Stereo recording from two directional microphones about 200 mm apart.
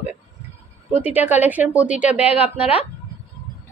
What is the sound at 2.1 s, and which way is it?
Speech, 30° left (ahead or behind).